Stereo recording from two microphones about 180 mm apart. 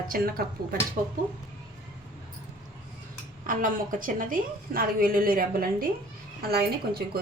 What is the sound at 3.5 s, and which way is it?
A woman's voice, 50° right (ahead or behind).